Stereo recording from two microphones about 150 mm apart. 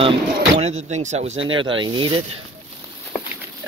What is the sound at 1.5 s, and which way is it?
Speech, 35° right (ahead or behind).